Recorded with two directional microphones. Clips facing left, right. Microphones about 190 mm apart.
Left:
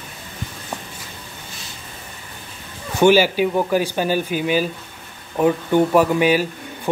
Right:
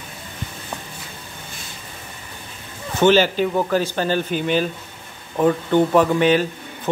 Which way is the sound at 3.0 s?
10° left (ahead or behind).